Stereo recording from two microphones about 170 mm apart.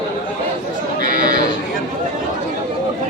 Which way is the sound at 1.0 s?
55° right (ahead or behind).